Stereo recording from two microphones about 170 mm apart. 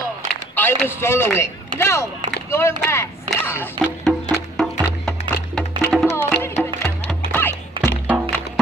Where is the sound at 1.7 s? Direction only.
15° left (ahead or behind).